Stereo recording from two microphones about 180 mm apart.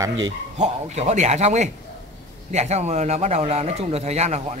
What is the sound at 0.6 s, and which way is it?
A man's voice, 40° right (ahead or behind).